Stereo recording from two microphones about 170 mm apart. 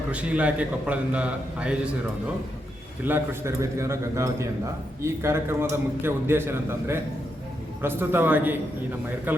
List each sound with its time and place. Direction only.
0.1 s a man's voice: 10° right (ahead or behind)
3.0 s a man's voice: 15° right (ahead or behind)